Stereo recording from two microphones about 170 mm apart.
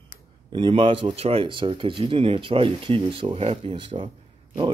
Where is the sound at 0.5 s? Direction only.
30° right (ahead or behind).